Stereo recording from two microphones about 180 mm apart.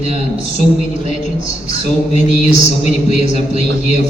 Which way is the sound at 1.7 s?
40° left (ahead or behind).